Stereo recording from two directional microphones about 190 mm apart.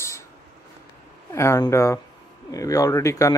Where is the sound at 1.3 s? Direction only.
15° left (ahead or behind).